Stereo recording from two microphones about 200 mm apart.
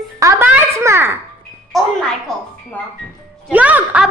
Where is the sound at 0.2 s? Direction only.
15° right (ahead or behind).